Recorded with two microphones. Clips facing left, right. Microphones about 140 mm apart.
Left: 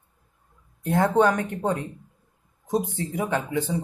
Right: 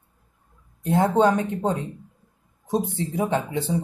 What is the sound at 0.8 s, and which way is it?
Speech, 20° right (ahead or behind).